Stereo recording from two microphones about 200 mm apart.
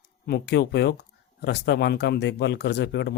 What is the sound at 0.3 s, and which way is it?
Speech, 55° left (ahead or behind).